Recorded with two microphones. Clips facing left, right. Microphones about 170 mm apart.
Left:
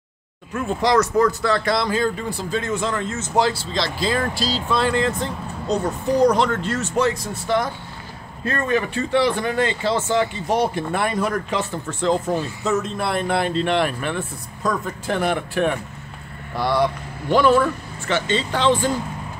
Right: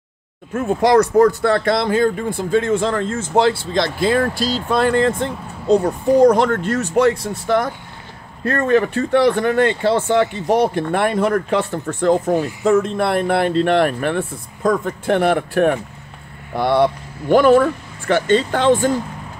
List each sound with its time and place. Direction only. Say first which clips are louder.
0.5 s speech: right 5 dB; 50° right (ahead or behind)